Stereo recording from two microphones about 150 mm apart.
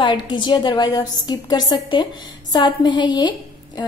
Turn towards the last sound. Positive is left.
turn(degrees=30)  # may be behind; listen again after turning